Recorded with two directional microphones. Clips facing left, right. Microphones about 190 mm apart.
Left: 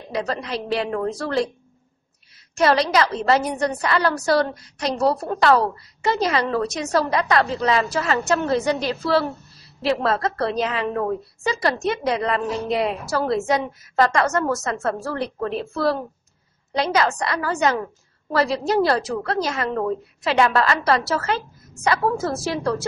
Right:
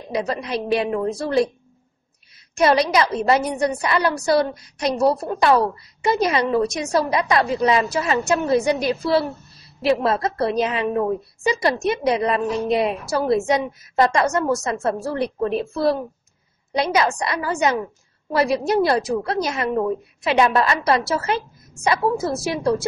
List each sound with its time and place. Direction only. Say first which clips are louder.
0.1 s a woman's voice: right 2 dB; 15° right (ahead or behind)
2.5 s a woman's voice: right 1 dB; 15° right (ahead or behind)